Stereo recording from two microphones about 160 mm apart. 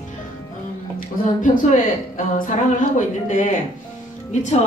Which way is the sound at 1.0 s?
55° left (ahead or behind).